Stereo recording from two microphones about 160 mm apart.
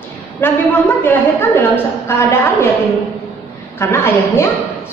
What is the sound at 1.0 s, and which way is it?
A woman's voice, 15° left (ahead or behind).